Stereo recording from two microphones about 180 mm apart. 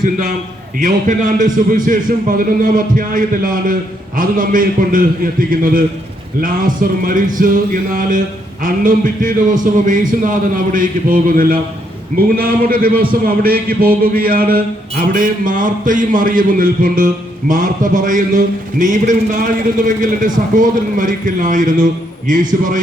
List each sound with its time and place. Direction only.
0.8 s a man's voice: 45° right (ahead or behind)